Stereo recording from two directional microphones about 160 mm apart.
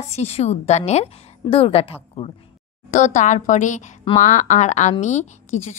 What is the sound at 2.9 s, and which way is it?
A woman's voice, 50° left (ahead or behind).